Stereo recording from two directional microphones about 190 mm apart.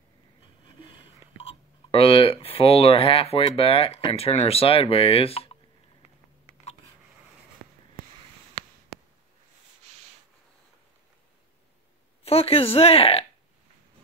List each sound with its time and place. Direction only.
0.7 s speech: 25° left (ahead or behind)
12.3 s speech: 30° left (ahead or behind)